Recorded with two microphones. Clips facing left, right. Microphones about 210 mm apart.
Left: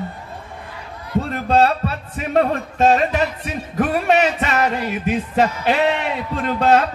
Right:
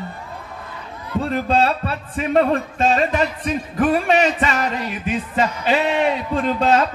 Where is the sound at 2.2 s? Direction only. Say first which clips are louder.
Right 1 dB; 55° left (ahead or behind).